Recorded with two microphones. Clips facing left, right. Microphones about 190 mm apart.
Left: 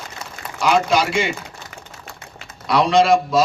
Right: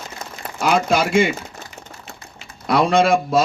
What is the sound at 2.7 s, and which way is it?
Speech, 50° right (ahead or behind).